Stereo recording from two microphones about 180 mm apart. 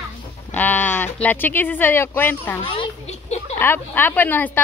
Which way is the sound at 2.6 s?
35° left (ahead or behind).